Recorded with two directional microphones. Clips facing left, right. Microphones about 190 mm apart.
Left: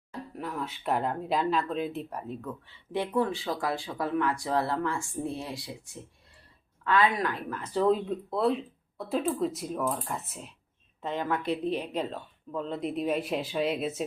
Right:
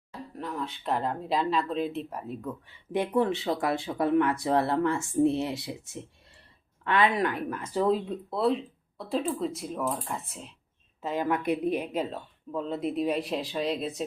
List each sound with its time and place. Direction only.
0.3 s speech: 5° left (ahead or behind)
2.4 s speech: 15° right (ahead or behind); by 10.5 s centre (ahead or behind)
11.0 s speech: 10° right (ahead or behind)